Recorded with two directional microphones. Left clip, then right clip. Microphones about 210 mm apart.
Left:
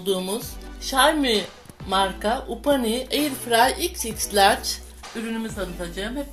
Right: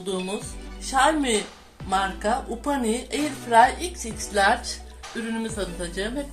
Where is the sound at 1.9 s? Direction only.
40° left (ahead or behind).